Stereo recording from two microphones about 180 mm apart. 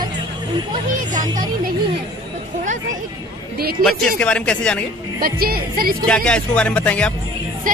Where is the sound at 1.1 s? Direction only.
45° right (ahead or behind).